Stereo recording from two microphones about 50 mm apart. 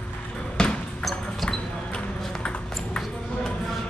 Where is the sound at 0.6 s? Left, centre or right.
Centre.